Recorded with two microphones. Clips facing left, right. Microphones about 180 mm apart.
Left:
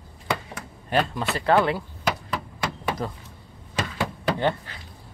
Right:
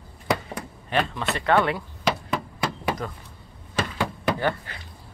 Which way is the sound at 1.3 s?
30° left (ahead or behind).